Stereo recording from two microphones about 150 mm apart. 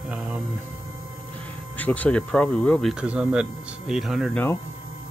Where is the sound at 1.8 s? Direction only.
10° left (ahead or behind).